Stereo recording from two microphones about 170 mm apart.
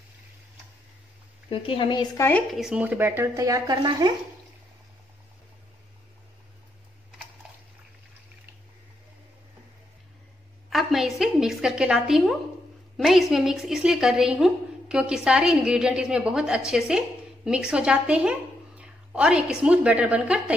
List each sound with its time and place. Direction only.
1.5 s a woman's voice: 30° left (ahead or behind)
2.5 s speech: 5° right (ahead or behind); by 4.1 s 25° right (ahead or behind)
10.7 s a sound: centre (ahead or behind)
12.9 s a woman's voice: centre (ahead or behind)